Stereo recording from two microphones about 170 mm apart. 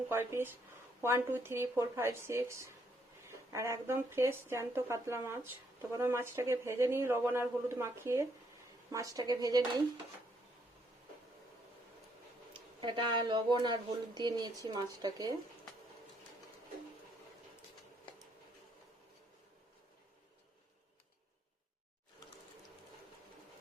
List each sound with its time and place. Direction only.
0.1 s speech: 15° right (ahead or behind)
12.8 s speech: 25° right (ahead or behind)